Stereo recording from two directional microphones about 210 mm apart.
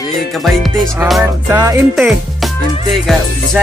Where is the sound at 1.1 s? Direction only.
10° right (ahead or behind).